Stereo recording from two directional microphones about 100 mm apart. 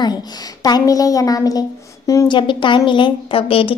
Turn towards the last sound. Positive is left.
turn(degrees=65)  # may be behind; listen again after turning